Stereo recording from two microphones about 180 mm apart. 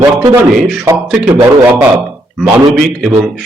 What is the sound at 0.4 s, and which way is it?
Speech, centre (ahead or behind).